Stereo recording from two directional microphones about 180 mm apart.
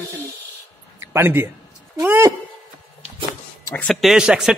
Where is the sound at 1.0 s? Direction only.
15° right (ahead or behind).